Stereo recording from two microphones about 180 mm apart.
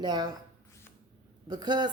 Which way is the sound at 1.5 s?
25° right (ahead or behind).